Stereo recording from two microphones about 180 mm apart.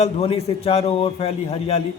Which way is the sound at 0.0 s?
35° left (ahead or behind).